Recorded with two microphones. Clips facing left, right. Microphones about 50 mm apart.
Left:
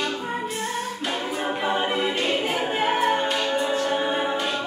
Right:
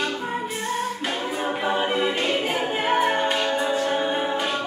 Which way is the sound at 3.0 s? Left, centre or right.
Centre.